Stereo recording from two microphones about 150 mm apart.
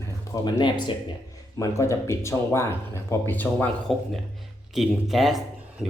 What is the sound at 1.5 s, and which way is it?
Speech, 20° left (ahead or behind).